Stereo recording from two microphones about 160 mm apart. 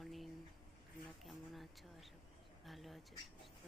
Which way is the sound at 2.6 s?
Centre (ahead or behind).